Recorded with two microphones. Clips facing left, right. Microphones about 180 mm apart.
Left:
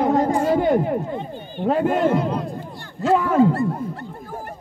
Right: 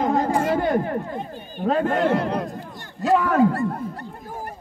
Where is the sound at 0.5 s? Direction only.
15° left (ahead or behind).